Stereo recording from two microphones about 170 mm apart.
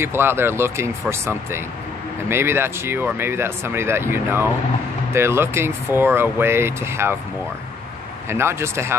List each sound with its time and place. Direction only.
0.0 s speech: 15° right (ahead or behind)
8.3 s speech: 15° right (ahead or behind)